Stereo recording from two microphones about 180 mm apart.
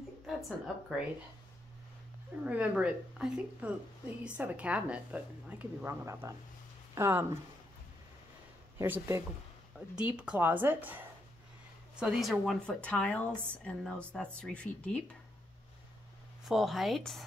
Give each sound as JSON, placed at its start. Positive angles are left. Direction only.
{"t": 0.4, "sound": "speech", "side_deg": 0}
{"t": 2.4, "sound": "a woman's voice", "side_deg": -5}
{"t": 8.7, "sound": "a woman's voice", "side_deg": -10}
{"t": 16.4, "sound": "speech", "side_deg": 0}